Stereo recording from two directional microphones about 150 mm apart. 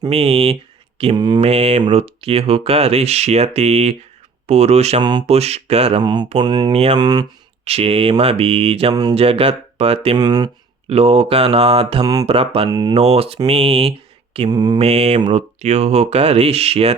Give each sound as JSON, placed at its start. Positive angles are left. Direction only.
{"t": 0.1, "sound": "speech", "side_deg": -40}
{"t": 1.4, "sound": "speech", "side_deg": -45}
{"t": 6.0, "sound": "speech", "side_deg": -30}
{"t": 6.7, "sound": "speech", "side_deg": -45}
{"t": 7.0, "sound": "speech", "side_deg": -25}
{"t": 7.6, "sound": "speech", "side_deg": -40}
{"t": 8.9, "sound": "speech", "side_deg": -25}
{"t": 9.1, "sound": "speech", "side_deg": -40}
{"t": 10.2, "sound": "speech", "side_deg": -25}
{"t": 10.8, "sound": "speech", "side_deg": -40}
{"t": 12.6, "sound": "speech", "side_deg": -25}
{"t": 12.9, "sound": "speech", "side_deg": -45}
{"t": 14.5, "sound": "speech", "side_deg": -25}
{"t": 14.8, "sound": "speech", "side_deg": -45}